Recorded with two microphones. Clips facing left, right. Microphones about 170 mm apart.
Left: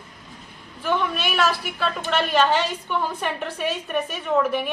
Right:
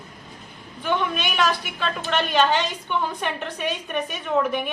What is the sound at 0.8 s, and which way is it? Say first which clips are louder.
A woman's voice: left 1 dB; 5° left (ahead or behind).